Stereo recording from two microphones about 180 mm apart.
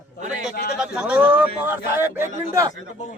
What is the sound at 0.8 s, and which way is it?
Speech, 5° right (ahead or behind).